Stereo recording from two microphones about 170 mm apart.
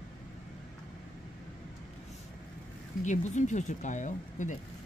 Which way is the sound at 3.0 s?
45° left (ahead or behind).